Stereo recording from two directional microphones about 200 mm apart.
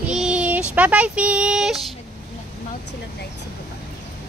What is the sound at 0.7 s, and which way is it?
Speech, 5° right (ahead or behind).